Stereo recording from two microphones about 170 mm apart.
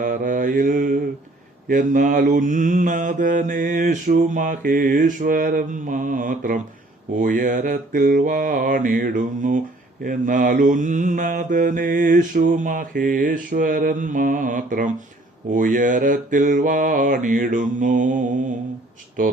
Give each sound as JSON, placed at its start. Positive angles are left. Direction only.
{"t": 0.0, "sound": "mantra", "side_deg": -50}